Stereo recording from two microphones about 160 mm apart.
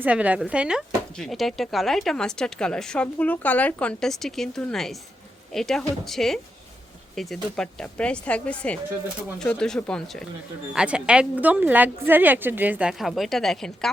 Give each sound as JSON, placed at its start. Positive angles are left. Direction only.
{"t": 0.0, "sound": "speech", "side_deg": -10}
{"t": 10.8, "sound": "a woman's voice", "side_deg": -5}